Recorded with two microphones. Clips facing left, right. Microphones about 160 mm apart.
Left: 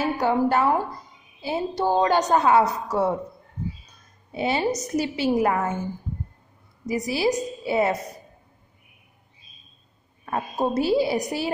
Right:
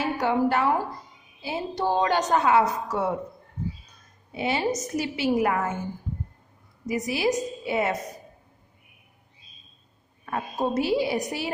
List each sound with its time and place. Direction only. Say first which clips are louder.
0.0 s a woman's voice: left 2 dB; 40° left (ahead or behind)
4.3 s a woman's voice: left 2 dB; 35° left (ahead or behind)
6.9 s a woman's voice: left 2 dB; 35° left (ahead or behind)
10.2 s a woman's voice: left 2 dB; 35° left (ahead or behind)